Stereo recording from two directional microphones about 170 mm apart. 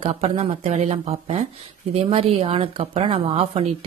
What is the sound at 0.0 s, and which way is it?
A woman's voice, 40° right (ahead or behind).